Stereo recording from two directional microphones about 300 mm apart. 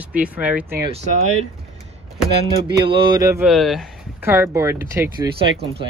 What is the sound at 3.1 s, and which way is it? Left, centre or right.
A man's voice, centre.